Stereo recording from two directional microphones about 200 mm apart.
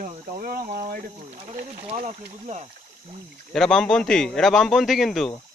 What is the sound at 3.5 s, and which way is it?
A man's voice, centre (ahead or behind).